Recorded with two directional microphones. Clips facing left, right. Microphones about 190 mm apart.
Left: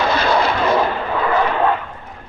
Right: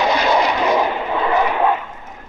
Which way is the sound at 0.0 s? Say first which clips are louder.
Even; 15° right (ahead or behind).